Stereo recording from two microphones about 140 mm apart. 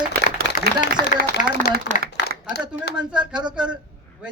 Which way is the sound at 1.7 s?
90° right.